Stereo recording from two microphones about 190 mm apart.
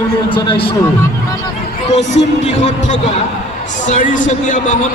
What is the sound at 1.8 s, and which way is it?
A man's voice, 35° left (ahead or behind).